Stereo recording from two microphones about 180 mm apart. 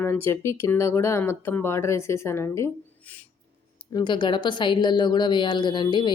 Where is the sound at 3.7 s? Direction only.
25° left (ahead or behind).